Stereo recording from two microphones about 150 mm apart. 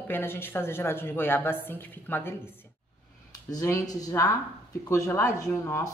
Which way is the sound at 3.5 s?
20° left (ahead or behind).